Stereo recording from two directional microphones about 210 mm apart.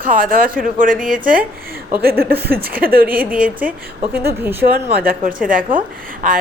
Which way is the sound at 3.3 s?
5° right (ahead or behind).